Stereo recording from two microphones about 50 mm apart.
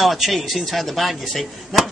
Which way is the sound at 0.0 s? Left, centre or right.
Centre.